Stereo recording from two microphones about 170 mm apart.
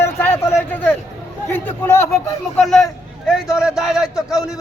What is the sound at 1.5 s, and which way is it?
Speech, 10° left (ahead or behind).